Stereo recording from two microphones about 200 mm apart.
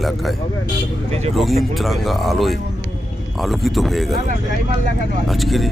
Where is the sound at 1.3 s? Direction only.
Centre (ahead or behind).